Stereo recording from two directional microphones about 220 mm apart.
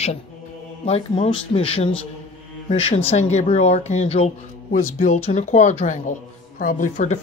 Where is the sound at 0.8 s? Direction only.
30° left (ahead or behind).